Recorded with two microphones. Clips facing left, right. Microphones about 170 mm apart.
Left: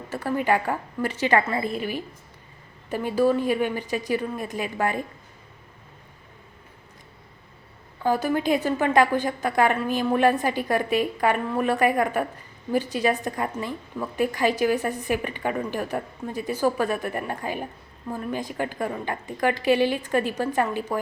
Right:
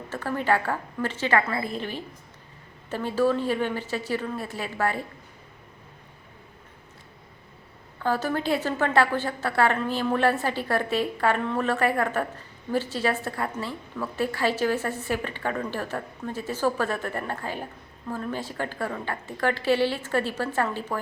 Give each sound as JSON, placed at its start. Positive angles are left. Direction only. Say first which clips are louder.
{"t": 0.1, "sound": "a woman's voice", "louder": "left 2 dB", "side_deg": 10}
{"t": 1.4, "sound": "a woman's voice", "louder": "left 2 dB", "side_deg": 25}
{"t": 1.8, "sound": "a woman's voice", "louder": "left 4 dB", "side_deg": 10}
{"t": 8.0, "sound": "a woman's voice", "louder": "left 3 dB", "side_deg": 15}